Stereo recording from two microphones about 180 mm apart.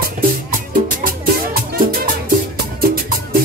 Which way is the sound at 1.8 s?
55° right (ahead or behind).